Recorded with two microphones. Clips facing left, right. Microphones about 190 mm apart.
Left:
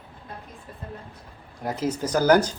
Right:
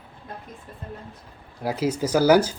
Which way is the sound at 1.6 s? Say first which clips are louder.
Right 2 dB; 10° right (ahead or behind).